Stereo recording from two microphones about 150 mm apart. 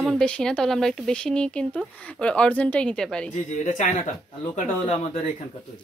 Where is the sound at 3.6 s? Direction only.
55° left (ahead or behind).